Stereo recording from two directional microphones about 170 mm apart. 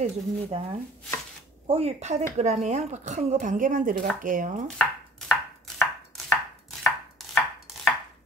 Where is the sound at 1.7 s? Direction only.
35° right (ahead or behind).